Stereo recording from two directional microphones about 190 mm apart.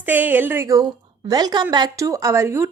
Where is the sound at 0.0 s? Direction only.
10° right (ahead or behind).